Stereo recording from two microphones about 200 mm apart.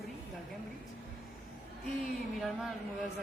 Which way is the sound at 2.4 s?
Centre (ahead or behind).